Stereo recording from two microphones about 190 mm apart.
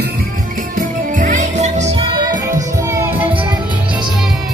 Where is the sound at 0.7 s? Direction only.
45° right (ahead or behind).